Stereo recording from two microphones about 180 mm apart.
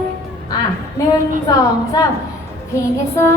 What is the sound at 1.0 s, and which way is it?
Female singing, 15° left (ahead or behind).